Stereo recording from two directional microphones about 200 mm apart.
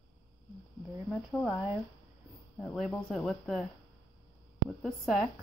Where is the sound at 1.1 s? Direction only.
Centre (ahead or behind).